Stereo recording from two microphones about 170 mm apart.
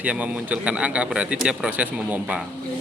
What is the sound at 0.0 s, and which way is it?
A man's voice, 10° right (ahead or behind).